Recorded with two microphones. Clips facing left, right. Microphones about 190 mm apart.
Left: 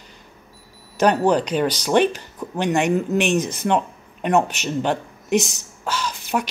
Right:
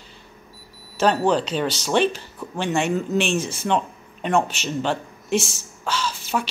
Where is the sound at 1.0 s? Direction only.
10° left (ahead or behind).